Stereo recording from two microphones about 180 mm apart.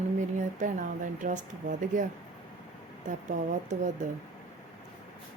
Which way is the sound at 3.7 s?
45° right (ahead or behind).